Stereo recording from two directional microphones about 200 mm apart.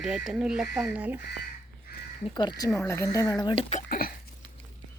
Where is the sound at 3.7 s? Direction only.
45° left (ahead or behind).